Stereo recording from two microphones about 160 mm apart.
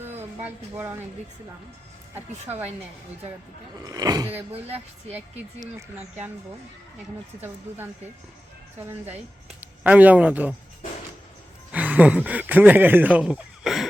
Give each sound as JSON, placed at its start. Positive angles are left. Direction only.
{"t": 0.4, "sound": "speech", "side_deg": -15}
{"t": 2.1, "sound": "speech", "side_deg": -15}
{"t": 3.8, "sound": "speech", "side_deg": -25}
{"t": 4.3, "sound": "speech", "side_deg": -10}
{"t": 5.0, "sound": "speech", "side_deg": -40}
{"t": 8.8, "sound": "speech", "side_deg": -15}
{"t": 11.7, "sound": "speech", "side_deg": -10}